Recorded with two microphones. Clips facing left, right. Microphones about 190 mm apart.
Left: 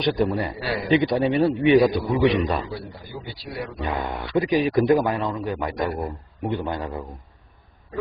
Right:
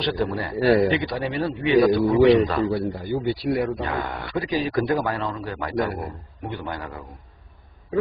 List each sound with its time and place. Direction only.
0.0 s a man's voice: 15° left (ahead or behind)
0.6 s a man's voice: 45° right (ahead or behind)
0.8 s a man's voice: 20° left (ahead or behind)
2.7 s a man's voice: 50° right (ahead or behind)
3.8 s a man's voice: 20° left (ahead or behind)